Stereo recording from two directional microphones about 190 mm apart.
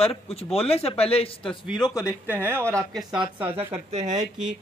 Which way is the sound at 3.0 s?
25° right (ahead or behind).